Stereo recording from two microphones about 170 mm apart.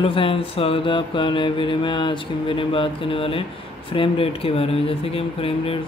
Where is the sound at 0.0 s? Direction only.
30° left (ahead or behind).